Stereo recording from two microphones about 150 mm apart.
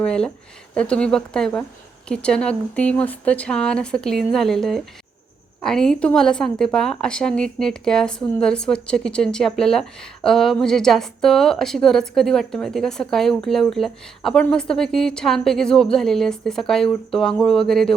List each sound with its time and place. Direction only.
0.0 s speech: 5° left (ahead or behind)